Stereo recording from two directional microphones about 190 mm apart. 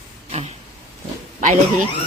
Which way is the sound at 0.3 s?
35° right (ahead or behind).